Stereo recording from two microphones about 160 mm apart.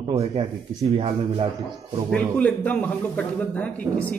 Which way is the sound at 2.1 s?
10° left (ahead or behind).